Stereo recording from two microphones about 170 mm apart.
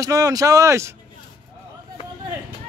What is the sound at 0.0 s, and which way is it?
Speech, 20° right (ahead or behind).